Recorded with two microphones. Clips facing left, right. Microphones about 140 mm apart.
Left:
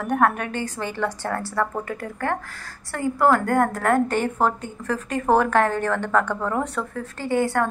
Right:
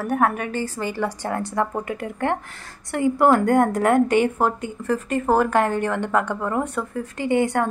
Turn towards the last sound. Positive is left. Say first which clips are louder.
# right 2 dB
turn(degrees=-20)  # may be behind; listen again after turning